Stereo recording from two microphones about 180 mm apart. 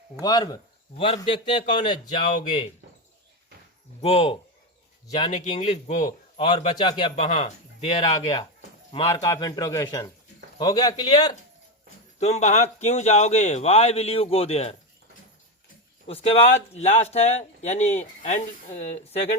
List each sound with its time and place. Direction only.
0.2 s a man's voice: 20° left (ahead or behind)
4.0 s a man's voice: 30° left (ahead or behind)
5.3 s speech: 40° left (ahead or behind)
6.1 s a man's voice: 25° left (ahead or behind)
7.2 s a man's voice: 40° left (ahead or behind); by 11.3 s 20° left (ahead or behind)
12.2 s speech: 40° left (ahead or behind)
16.0 s speech: 35° left (ahead or behind)